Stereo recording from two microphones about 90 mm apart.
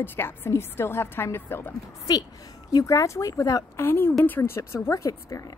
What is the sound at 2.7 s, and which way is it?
A woman's voice, 40° left (ahead or behind).